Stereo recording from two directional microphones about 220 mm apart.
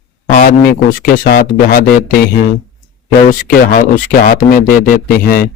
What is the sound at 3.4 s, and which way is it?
A man's voice, 40° left (ahead or behind).